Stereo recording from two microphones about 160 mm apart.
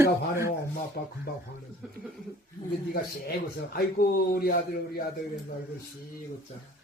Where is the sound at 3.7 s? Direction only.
65° left (ahead or behind).